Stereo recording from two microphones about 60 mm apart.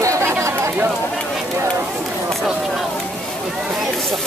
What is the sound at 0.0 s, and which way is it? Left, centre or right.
Chatter, right.